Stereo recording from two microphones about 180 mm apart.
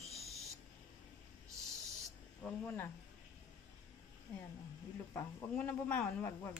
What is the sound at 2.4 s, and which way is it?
Speech, 10° left (ahead or behind).